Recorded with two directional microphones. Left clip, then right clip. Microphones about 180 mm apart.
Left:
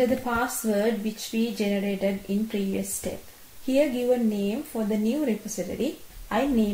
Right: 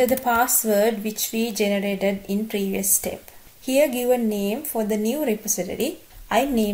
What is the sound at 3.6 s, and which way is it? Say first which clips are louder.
Speech: right 4 dB; 10° right (ahead or behind).